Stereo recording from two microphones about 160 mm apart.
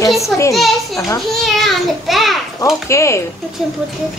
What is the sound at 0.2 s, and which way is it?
Speech, 20° left (ahead or behind).